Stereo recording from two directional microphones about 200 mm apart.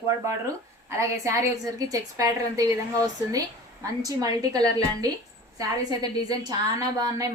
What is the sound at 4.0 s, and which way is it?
A woman's voice, 20° right (ahead or behind).